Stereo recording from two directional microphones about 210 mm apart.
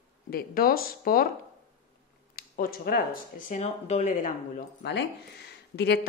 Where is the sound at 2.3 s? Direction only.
45° left (ahead or behind).